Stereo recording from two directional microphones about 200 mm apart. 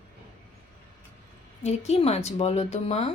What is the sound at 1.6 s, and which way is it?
A woman's voice, 35° left (ahead or behind).